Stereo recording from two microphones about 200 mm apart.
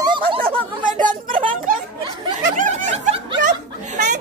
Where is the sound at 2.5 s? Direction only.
40° right (ahead or behind).